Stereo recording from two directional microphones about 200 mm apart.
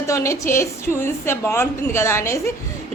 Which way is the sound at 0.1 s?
15° left (ahead or behind).